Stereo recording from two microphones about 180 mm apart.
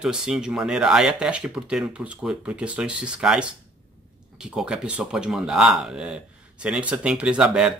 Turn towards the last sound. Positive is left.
turn(degrees=-5)  # may be behind; listen again after turning